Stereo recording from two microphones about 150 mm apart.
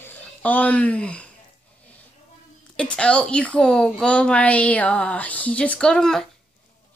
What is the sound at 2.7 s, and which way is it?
Speech, 5° left (ahead or behind).